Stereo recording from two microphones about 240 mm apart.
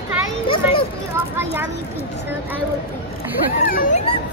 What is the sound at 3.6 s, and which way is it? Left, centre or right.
Speech, left.